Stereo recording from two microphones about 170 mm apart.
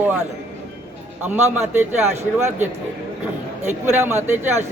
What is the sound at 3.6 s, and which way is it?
Speech, 15° right (ahead or behind).